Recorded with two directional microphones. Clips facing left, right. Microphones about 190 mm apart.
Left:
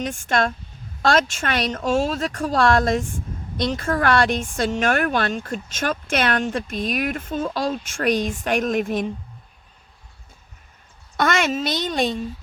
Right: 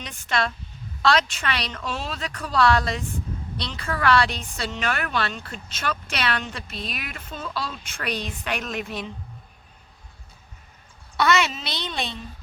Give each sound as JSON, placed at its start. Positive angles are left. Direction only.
{"t": 0.0, "sound": "a woman's voice", "side_deg": 50}
{"t": 11.2, "sound": "a woman's voice", "side_deg": 50}